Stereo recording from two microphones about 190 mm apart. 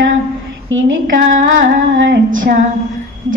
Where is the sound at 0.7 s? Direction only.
90° right.